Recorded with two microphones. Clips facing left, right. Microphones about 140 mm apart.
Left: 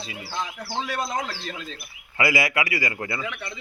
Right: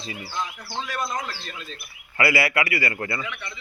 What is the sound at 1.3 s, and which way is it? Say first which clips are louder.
Speech: left 3 dB; 90° left.